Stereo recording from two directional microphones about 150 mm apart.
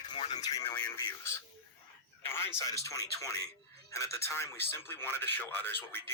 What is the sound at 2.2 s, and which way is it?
Speech, 15° left (ahead or behind).